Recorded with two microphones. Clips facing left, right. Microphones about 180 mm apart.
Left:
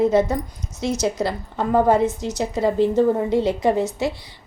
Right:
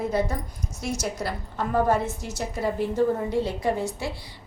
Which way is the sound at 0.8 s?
20° left (ahead or behind).